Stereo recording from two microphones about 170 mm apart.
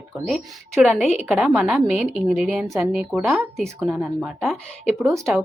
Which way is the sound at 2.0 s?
35° left (ahead or behind).